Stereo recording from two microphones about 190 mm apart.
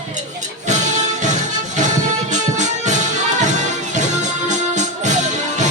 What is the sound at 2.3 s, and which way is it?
Music, 40° right (ahead or behind).